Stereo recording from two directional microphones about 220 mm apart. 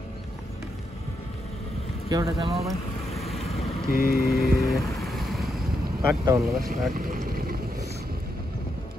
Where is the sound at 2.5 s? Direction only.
Centre (ahead or behind).